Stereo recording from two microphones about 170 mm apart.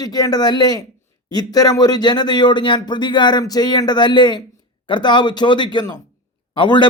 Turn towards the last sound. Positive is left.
turn(degrees=25)  # may be behind; listen again after turning